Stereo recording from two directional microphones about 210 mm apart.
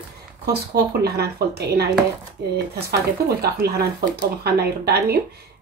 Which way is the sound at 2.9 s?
50° right (ahead or behind).